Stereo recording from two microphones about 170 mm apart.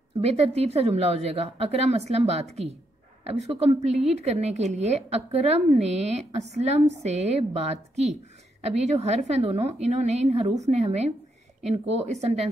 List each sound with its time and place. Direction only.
0.2 s a woman's voice: 40° right (ahead or behind)